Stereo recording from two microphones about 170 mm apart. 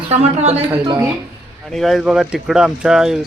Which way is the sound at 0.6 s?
10° right (ahead or behind).